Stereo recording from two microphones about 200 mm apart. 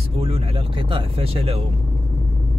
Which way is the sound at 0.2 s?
30° right (ahead or behind).